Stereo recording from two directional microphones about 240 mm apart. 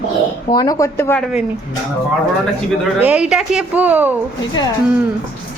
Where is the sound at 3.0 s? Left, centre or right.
Centre.